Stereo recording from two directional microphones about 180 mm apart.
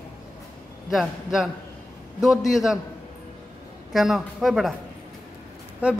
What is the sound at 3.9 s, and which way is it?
Speech, centre (ahead or behind).